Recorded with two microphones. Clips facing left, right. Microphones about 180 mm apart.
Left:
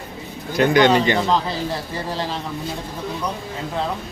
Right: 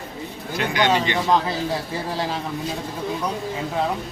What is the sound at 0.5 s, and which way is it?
Speech, 45° left (ahead or behind).